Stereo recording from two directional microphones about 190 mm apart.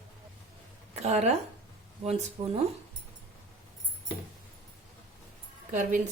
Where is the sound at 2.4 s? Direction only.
35° right (ahead or behind).